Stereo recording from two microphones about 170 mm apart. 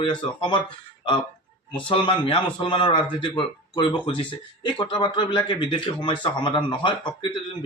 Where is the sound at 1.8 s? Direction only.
30° left (ahead or behind).